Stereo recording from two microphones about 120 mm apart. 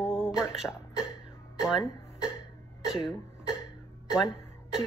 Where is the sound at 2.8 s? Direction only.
5° right (ahead or behind).